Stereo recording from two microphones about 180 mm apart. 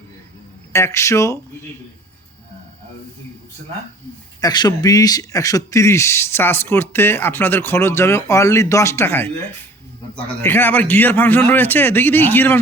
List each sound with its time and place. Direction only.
0.7 s speech: 15° left (ahead or behind)
4.4 s speech: 20° left (ahead or behind)
10.4 s speech: 10° left (ahead or behind)